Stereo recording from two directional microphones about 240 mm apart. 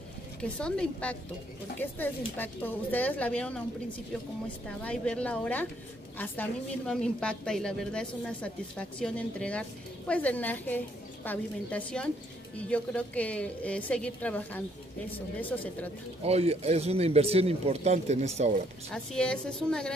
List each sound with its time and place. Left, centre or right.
0.4 s a woman's voice: centre
4.8 s a woman's voice: centre
16.3 s speech: right
19.1 s a woman's voice: centre